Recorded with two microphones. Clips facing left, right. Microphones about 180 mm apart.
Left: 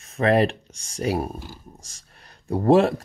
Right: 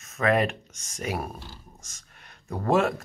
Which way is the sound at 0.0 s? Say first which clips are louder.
Left 4 dB; 30° left (ahead or behind).